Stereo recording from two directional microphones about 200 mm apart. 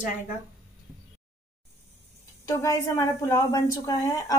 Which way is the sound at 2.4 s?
15° left (ahead or behind).